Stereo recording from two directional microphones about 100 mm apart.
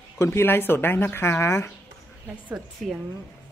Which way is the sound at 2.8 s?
5° left (ahead or behind).